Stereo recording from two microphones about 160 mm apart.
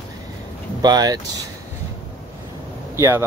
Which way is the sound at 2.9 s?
20° right (ahead or behind).